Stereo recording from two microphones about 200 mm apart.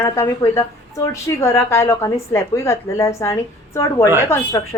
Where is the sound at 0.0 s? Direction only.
15° left (ahead or behind).